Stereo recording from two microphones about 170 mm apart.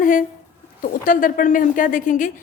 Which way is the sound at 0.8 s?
50° left (ahead or behind).